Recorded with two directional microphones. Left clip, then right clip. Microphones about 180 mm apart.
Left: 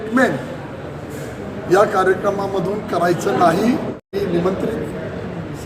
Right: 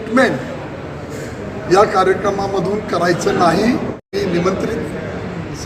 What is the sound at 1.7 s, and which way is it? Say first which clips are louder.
A man's voice: right 2 dB; 10° left (ahead or behind).